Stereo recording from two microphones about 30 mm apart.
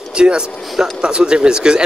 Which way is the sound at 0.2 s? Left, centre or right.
Right.